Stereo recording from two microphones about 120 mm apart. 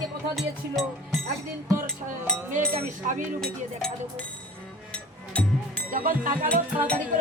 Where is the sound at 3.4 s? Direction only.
5° left (ahead or behind).